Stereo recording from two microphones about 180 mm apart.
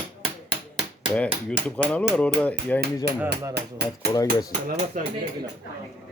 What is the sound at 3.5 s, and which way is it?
Speech, 65° right (ahead or behind).